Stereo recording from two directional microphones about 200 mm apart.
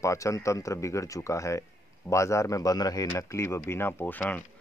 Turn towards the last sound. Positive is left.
turn(degrees=10)  # may be behind; listen again after turning